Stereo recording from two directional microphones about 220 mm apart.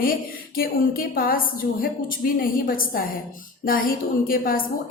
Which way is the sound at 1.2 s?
40° left (ahead or behind).